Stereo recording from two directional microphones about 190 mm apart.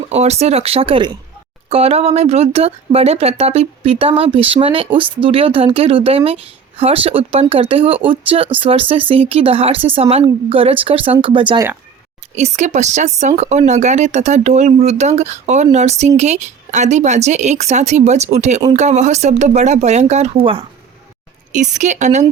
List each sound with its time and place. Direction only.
0.1 s speech: 35° right (ahead or behind)
12.4 s speech: 40° right (ahead or behind)
21.5 s speech: 40° right (ahead or behind)